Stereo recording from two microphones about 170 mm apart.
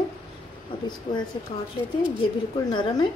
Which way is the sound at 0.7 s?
30° left (ahead or behind).